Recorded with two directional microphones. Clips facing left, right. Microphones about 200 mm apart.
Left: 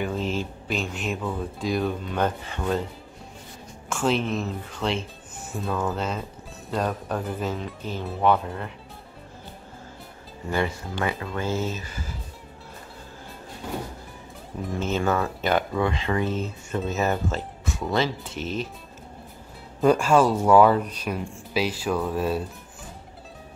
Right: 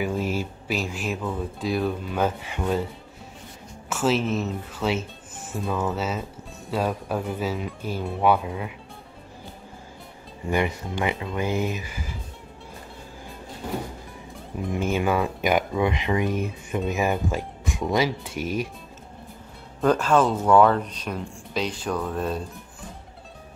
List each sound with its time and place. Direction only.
0.0 s speech: 10° right (ahead or behind)
3.9 s speech: 5° right (ahead or behind)
10.5 s speech: 15° right (ahead or behind)
14.7 s speech: 10° right (ahead or behind)
19.8 s speech: 10° left (ahead or behind)